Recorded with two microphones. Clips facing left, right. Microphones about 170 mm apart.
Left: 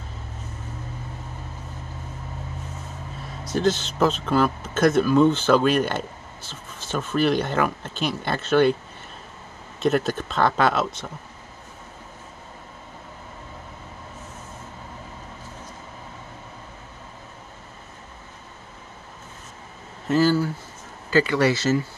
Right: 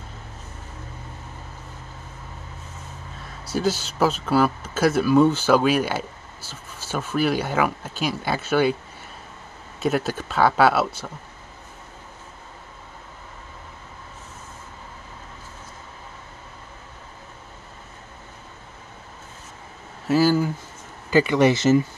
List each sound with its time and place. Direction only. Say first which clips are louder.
3.5 s speech: left 1 dB; 5° right (ahead or behind)
9.8 s speech: left 2 dB; 5° right (ahead or behind)
20.1 s speech: right 1 dB; 10° right (ahead or behind)